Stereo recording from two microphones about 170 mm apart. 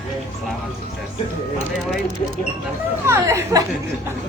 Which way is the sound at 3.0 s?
15° right (ahead or behind).